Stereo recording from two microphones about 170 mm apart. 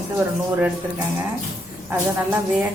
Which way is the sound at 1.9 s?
15° right (ahead or behind).